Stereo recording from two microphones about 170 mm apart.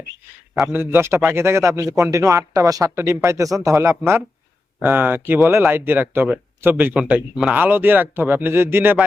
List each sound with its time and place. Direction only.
0.5 s speech: 10° right (ahead or behind)